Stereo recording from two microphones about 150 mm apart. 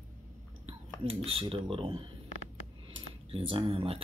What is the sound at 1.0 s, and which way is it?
Speech, 35° right (ahead or behind).